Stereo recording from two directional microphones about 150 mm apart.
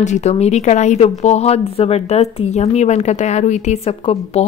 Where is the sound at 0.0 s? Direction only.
50° left (ahead or behind).